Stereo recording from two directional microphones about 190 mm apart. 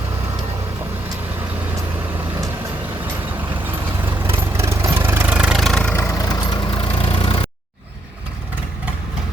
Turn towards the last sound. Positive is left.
turn(degrees=25)  # may be behind; listen again after turning